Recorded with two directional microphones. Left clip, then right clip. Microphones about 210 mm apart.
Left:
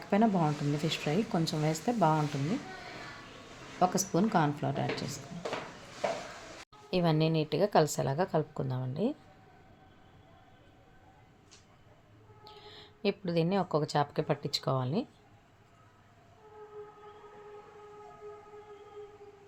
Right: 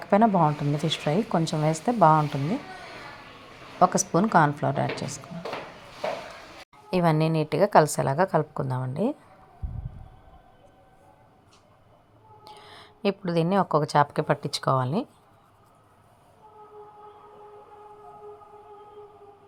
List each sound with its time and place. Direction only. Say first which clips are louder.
0.0 s speech: right 9 dB; 15° right (ahead or behind)
3.8 s speech: right 8 dB; 20° right (ahead or behind)
6.9 s speech: right 6 dB; 15° right (ahead or behind)
12.5 s speech: right 4 dB; 15° right (ahead or behind)